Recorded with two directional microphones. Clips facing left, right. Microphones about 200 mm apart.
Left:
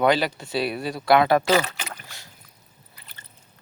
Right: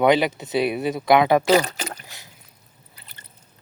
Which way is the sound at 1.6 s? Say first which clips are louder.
Right 4 dB; 35° right (ahead or behind).